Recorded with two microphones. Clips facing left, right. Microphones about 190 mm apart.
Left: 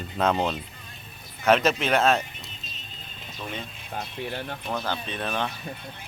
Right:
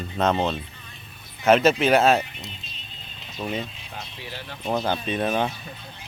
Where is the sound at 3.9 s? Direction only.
55° left (ahead or behind).